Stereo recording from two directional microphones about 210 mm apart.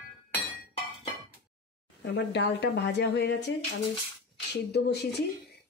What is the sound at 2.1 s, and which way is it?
Speech, 55° left (ahead or behind).